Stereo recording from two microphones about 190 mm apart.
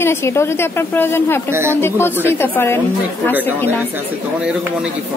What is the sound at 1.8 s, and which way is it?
Speech, 15° left (ahead or behind).